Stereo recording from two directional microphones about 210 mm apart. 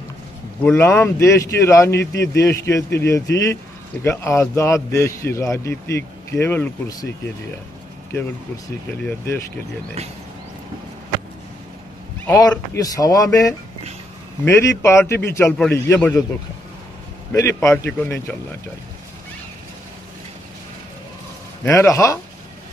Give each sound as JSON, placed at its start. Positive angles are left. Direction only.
{"t": 0.7, "sound": "a man's voice", "side_deg": 10}
{"t": 2.0, "sound": "speech", "side_deg": 55}
{"t": 2.4, "sound": "a man's voice", "side_deg": 15}
{"t": 9.0, "sound": "a man's voice", "side_deg": 10}
{"t": 12.3, "sound": "a man's voice", "side_deg": 15}
{"t": 17.3, "sound": "a man's voice", "side_deg": 15}
{"t": 21.6, "sound": "a man's voice", "side_deg": 15}